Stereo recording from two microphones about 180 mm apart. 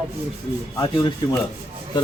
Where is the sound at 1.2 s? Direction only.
25° left (ahead or behind).